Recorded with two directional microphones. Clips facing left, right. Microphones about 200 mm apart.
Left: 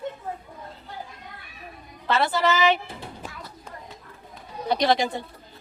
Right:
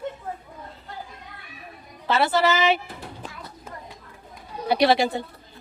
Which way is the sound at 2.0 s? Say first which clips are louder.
Right 2 dB; 5° right (ahead or behind).